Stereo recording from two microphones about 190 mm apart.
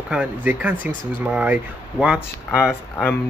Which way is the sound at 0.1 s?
5° right (ahead or behind).